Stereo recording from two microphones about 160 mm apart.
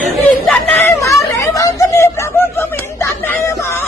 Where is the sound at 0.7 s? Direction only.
15° left (ahead or behind).